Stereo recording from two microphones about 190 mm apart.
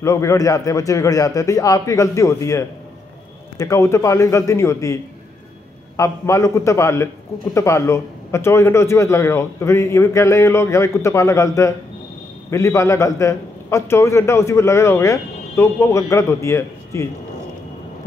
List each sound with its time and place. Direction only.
0.0 s a man's voice: 15° left (ahead or behind)